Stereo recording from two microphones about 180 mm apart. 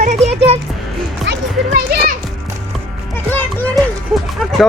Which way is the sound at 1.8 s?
55° right (ahead or behind).